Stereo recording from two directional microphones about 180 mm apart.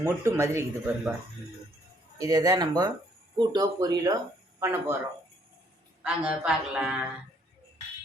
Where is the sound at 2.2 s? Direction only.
20° right (ahead or behind).